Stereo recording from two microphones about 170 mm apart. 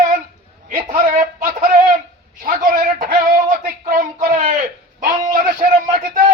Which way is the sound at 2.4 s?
55° right (ahead or behind).